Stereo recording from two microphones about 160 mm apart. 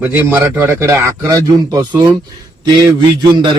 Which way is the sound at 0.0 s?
10° right (ahead or behind).